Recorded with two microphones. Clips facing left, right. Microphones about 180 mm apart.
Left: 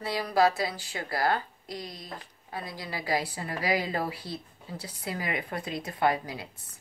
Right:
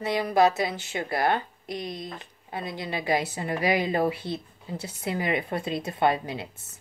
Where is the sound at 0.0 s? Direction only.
20° right (ahead or behind).